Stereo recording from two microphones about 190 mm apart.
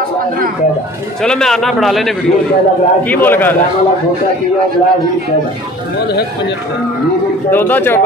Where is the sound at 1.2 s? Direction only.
5° left (ahead or behind).